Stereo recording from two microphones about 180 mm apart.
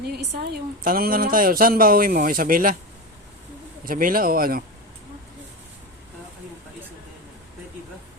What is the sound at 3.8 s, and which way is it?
Speech, 50° right (ahead or behind).